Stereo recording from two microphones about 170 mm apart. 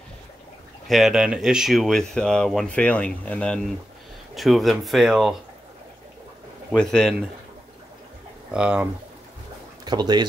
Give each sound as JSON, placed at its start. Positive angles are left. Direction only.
{"t": 0.8, "sound": "speech", "side_deg": 0}
{"t": 6.7, "sound": "speech", "side_deg": 5}
{"t": 8.5, "sound": "speech", "side_deg": -5}
{"t": 9.8, "sound": "speech", "side_deg": -25}